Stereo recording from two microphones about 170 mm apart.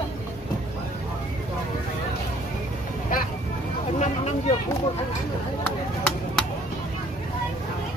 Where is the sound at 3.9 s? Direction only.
40° left (ahead or behind).